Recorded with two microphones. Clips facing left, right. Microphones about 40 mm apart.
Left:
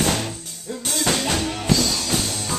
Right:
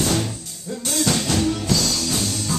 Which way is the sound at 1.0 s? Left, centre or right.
Left.